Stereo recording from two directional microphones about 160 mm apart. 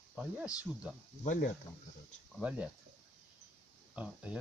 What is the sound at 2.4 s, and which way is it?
Speech, 10° right (ahead or behind).